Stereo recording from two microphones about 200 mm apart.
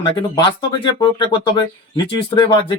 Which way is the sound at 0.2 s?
25° left (ahead or behind).